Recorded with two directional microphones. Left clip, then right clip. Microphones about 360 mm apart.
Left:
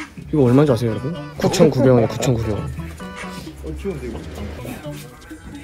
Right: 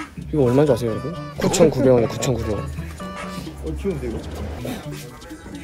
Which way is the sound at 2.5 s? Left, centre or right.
Centre.